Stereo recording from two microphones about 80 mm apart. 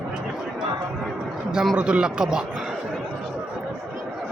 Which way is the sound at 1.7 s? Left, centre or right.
Centre.